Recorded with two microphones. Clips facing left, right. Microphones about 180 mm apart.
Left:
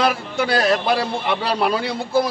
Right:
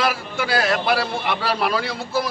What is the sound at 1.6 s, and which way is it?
Speech, 25° left (ahead or behind).